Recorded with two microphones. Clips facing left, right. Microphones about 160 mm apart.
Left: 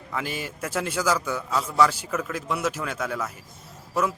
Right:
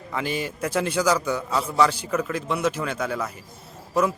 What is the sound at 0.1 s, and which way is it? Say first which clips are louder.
A man's voice: right 4 dB; centre (ahead or behind).